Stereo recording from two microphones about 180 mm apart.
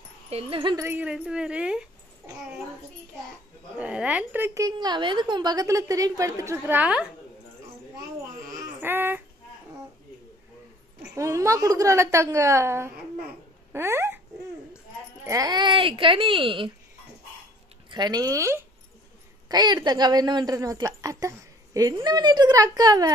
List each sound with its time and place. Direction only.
0.3 s a woman's voice: 30° right (ahead or behind)
0.8 s a woman's voice: 10° right (ahead or behind)
3.7 s a woman's voice: 5° right (ahead or behind)
8.8 s child singing: 10° right (ahead or behind)
11.1 s a woman's voice: 15° right (ahead or behind)
15.2 s a woman's voice: 20° right (ahead or behind)
17.8 s a woman's voice: 25° right (ahead or behind)